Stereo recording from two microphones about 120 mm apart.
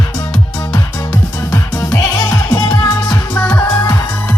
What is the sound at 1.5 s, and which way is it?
Music, 25° left (ahead or behind).